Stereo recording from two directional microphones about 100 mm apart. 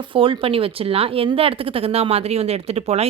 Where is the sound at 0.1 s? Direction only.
60° right (ahead or behind).